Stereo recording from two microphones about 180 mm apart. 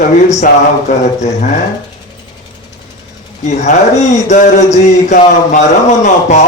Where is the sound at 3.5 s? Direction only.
40° left (ahead or behind).